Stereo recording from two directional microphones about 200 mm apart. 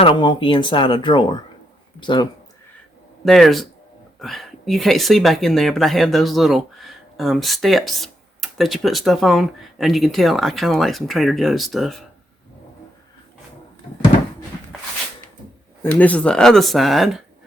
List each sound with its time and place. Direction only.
0.0 s speech: 25° left (ahead or behind)
3.2 s speech: centre (ahead or behind)
15.8 s speech: 10° left (ahead or behind)